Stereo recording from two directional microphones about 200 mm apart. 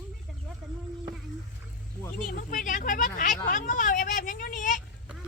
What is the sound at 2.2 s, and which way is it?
Speech, 45° left (ahead or behind).